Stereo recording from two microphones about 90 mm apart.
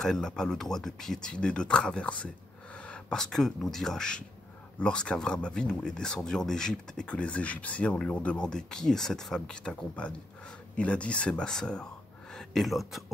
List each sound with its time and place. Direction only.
0.0 s speech: 5° left (ahead or behind)